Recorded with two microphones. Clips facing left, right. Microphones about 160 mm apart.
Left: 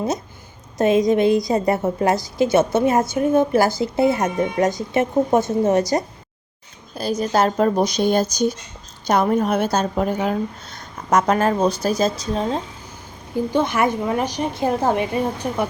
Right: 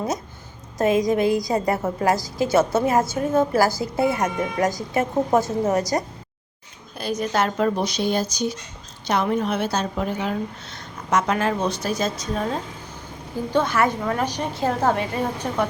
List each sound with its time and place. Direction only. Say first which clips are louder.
0.8 s a woman's voice: left 3 dB; 25° left (ahead or behind)
7.2 s a woman's voice: left 4 dB; 35° left (ahead or behind)
13.5 s a woman's voice: even; 15° left (ahead or behind)